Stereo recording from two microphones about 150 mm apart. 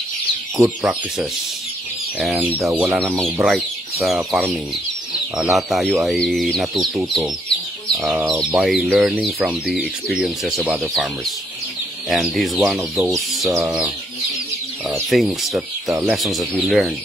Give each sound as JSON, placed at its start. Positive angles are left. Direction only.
{"t": 0.6, "sound": "speech", "side_deg": 0}
{"t": 13.1, "sound": "bird", "side_deg": 0}
{"t": 15.0, "sound": "speech", "side_deg": 0}